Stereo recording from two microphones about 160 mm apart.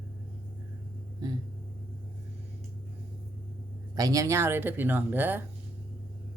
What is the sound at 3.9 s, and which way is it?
Speech, 20° right (ahead or behind).